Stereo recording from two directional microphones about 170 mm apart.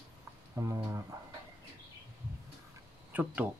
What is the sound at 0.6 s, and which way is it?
Speech, 20° right (ahead or behind).